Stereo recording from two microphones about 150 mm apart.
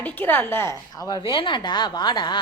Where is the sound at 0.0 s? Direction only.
10° left (ahead or behind).